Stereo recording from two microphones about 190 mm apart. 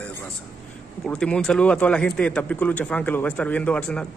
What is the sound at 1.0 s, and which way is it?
A man's voice, 5° left (ahead or behind).